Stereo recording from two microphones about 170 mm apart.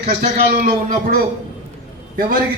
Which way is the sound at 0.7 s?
60° right (ahead or behind).